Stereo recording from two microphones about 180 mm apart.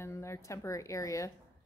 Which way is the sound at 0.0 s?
15° left (ahead or behind).